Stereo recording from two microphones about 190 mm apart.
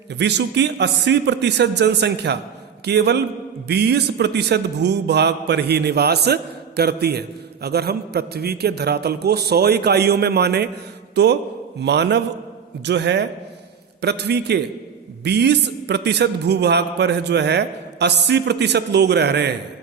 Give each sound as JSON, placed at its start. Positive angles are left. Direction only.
{"t": 0.2, "sound": "a man's voice", "side_deg": -65}